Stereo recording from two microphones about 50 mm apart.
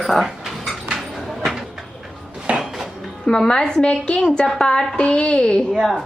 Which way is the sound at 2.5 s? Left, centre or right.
Centre.